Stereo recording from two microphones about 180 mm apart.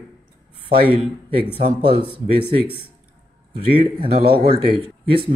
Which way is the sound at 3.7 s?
30° right (ahead or behind).